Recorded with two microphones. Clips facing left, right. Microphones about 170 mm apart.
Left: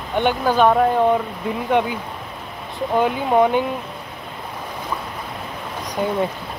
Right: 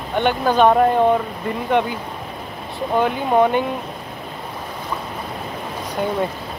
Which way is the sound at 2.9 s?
10° left (ahead or behind).